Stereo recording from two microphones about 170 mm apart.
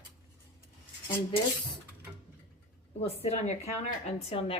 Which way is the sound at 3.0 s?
35° left (ahead or behind).